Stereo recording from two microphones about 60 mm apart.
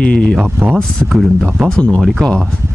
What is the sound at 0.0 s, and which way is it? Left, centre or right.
Speech, centre.